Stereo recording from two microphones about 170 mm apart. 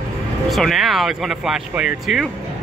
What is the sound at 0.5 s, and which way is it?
Speech, centre (ahead or behind).